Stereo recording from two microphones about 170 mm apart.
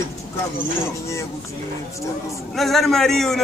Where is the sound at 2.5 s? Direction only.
Centre (ahead or behind).